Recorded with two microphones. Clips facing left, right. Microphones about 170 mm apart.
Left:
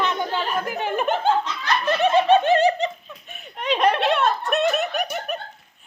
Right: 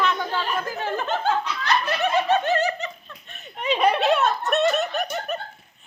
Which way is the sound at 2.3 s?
20° left (ahead or behind).